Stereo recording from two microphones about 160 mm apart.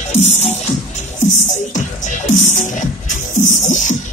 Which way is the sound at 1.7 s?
50° left (ahead or behind).